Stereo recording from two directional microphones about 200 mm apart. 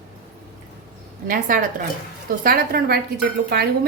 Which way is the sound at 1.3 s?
45° right (ahead or behind).